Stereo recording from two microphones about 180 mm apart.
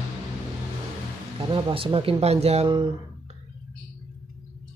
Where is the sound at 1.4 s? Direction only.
30° right (ahead or behind).